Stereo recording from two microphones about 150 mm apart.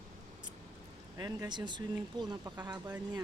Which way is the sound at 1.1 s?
25° right (ahead or behind).